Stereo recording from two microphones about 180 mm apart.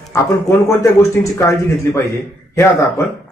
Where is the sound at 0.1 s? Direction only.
20° left (ahead or behind).